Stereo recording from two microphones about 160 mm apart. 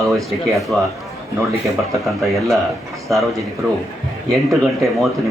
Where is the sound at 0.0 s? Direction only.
Centre (ahead or behind).